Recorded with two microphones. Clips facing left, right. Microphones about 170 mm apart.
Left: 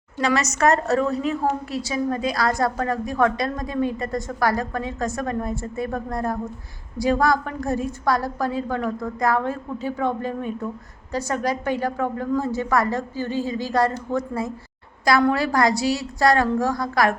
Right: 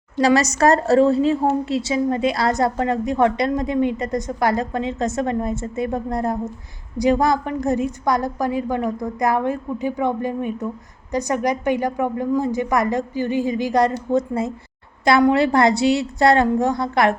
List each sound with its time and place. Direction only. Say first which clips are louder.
0.2 s a woman's voice: right 5 dB; 35° right (ahead or behind)